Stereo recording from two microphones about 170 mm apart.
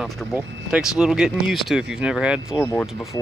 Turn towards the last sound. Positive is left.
turn(degrees=0)  # may be behind; listen again after turning